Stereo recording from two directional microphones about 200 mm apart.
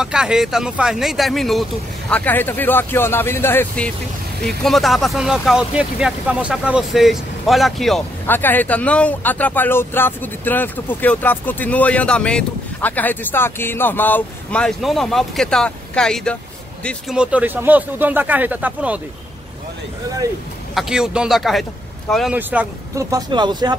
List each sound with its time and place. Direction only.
0.0 s speech: 5° right (ahead or behind)
20.7 s speech: 5° right (ahead or behind); by 23.7 s 20° right (ahead or behind)